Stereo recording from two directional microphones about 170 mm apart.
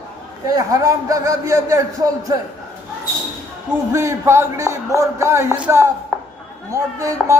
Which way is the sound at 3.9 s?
15° right (ahead or behind).